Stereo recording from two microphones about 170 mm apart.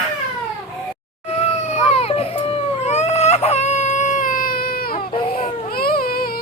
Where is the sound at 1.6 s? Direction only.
40° left (ahead or behind).